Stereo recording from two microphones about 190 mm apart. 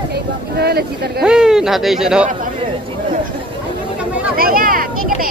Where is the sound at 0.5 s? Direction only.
55° right (ahead or behind).